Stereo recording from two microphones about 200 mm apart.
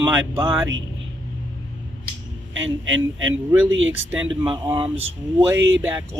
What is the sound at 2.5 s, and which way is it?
Speech, 70° right (ahead or behind).